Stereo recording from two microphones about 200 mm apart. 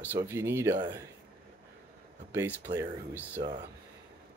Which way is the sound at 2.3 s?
15° right (ahead or behind).